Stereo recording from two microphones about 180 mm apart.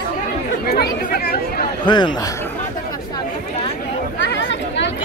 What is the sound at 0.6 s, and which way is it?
Speech, 60° left (ahead or behind).